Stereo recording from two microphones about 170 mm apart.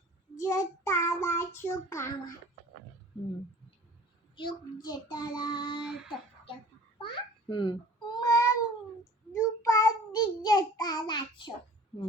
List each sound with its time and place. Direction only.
0.3 s child singing: 15° left (ahead or behind)
4.4 s child singing: 25° left (ahead or behind)
7.0 s cat: 30° left (ahead or behind)
9.3 s child singing: 20° left (ahead or behind)